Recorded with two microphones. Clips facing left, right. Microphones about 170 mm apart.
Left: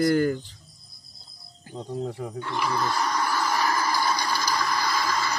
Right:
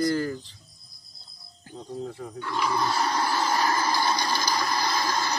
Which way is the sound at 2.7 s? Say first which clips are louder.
Right 1 dB; 25° right (ahead or behind).